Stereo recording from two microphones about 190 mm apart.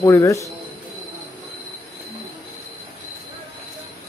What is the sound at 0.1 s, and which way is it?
Speech, 15° left (ahead or behind).